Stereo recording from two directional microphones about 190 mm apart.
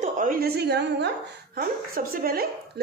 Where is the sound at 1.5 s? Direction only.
50° right (ahead or behind).